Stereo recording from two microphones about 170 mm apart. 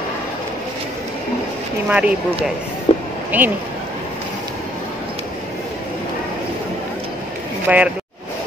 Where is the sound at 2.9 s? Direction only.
35° left (ahead or behind).